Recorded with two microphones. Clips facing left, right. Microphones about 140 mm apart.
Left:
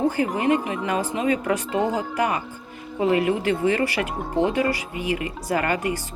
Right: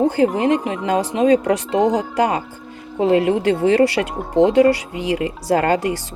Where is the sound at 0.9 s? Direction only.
85° right.